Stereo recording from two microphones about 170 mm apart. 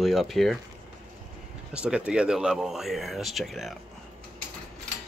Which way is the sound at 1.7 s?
5° right (ahead or behind).